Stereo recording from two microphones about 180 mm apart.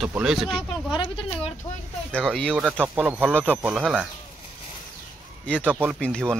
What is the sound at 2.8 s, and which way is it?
Speech, 10° right (ahead or behind).